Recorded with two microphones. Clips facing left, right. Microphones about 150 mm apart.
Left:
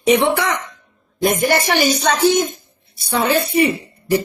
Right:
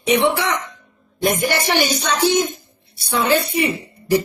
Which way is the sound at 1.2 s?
45° left (ahead or behind).